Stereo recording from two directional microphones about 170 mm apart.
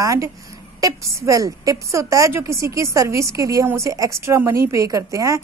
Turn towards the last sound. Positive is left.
turn(degrees=-20)  # may be behind; listen again after turning